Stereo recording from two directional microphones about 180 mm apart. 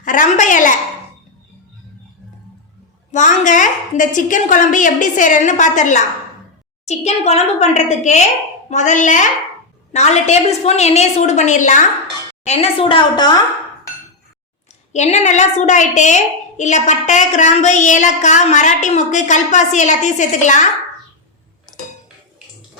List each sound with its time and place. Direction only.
0.0 s a woman's voice: 45° left (ahead or behind)
3.1 s a woman's voice: 45° left (ahead or behind)
12.5 s a woman's voice: 30° left (ahead or behind)
14.9 s a woman's voice: 40° left (ahead or behind)